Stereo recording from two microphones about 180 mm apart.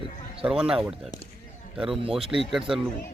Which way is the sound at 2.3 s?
Centre (ahead or behind).